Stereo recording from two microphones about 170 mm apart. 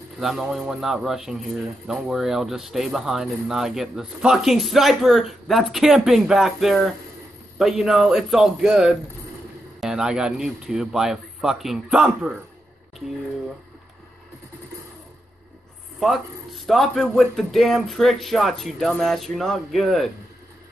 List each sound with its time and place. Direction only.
0.2 s speech: centre (ahead or behind)
16.0 s speech: centre (ahead or behind)